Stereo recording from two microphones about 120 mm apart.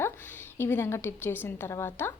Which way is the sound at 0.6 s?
20° left (ahead or behind).